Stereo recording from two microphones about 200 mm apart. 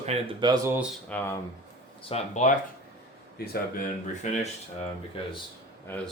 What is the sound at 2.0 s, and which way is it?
Speech, 35° left (ahead or behind).